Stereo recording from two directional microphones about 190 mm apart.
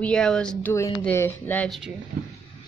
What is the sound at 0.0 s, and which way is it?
A woman's voice, 5° left (ahead or behind).